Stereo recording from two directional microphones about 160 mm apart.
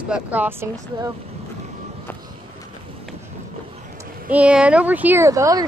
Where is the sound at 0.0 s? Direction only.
10° right (ahead or behind).